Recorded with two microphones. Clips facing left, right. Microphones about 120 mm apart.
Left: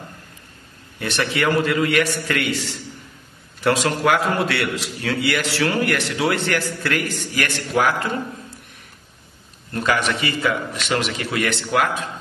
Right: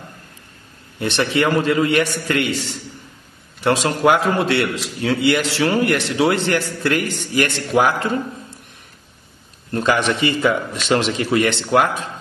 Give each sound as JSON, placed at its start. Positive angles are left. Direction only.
{"t": 0.9, "sound": "a man's voice", "side_deg": -25}
{"t": 3.6, "sound": "a man's voice", "side_deg": -25}
{"t": 9.7, "sound": "a man's voice", "side_deg": -30}